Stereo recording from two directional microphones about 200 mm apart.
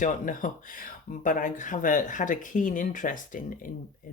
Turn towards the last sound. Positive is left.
turn(degrees=40)  # may be behind; listen again after turning